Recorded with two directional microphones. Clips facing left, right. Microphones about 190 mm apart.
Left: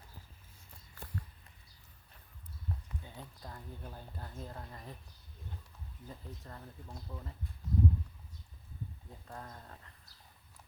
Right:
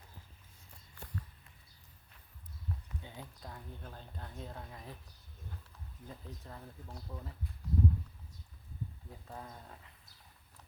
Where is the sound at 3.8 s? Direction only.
10° left (ahead or behind).